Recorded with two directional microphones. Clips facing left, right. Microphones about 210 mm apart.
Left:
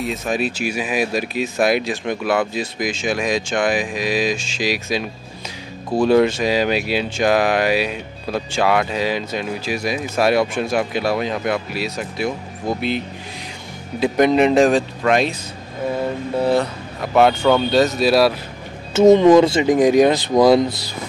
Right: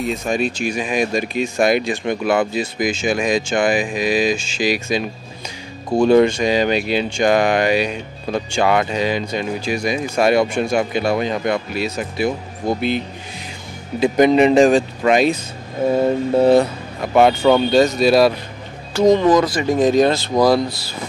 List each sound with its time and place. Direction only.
0.0 s speech: centre (ahead or behind)
16.3 s speech: 20° right (ahead or behind)
17.0 s speech: centre (ahead or behind)
19.1 s speech: 25° left (ahead or behind)